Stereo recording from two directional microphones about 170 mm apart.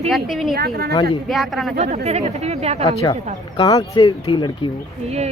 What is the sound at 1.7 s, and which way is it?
Speech, 40° right (ahead or behind).